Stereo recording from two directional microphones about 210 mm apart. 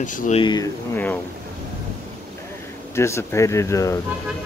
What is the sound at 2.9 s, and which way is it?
Speech, 15° left (ahead or behind).